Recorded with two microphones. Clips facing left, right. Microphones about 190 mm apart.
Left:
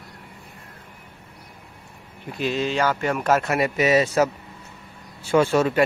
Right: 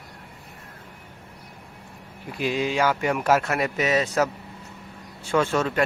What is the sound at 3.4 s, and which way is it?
Speech, centre (ahead or behind).